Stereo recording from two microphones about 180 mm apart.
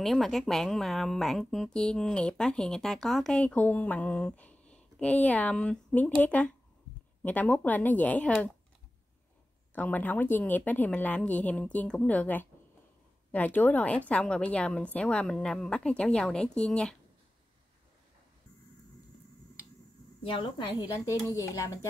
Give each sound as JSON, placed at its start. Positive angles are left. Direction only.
{"t": 0.0, "sound": "a woman's voice", "side_deg": 0}
{"t": 9.8, "sound": "a woman's voice", "side_deg": 10}
{"t": 20.2, "sound": "a woman's voice", "side_deg": 25}